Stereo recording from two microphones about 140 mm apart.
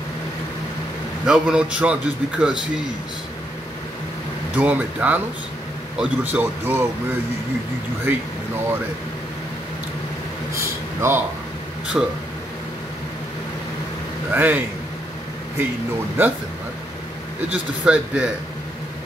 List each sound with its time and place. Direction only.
1.2 s a man's voice: 5° right (ahead or behind)
4.6 s a man's voice: 10° right (ahead or behind)
10.5 s air conditioning: 20° right (ahead or behind)
12.0 s a man's voice: 10° right (ahead or behind)
14.3 s a man's voice: 15° right (ahead or behind)
16.2 s a man's voice: 15° right (ahead or behind)
17.8 s a man's voice: 10° right (ahead or behind)